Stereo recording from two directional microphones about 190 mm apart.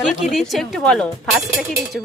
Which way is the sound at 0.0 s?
5° right (ahead or behind).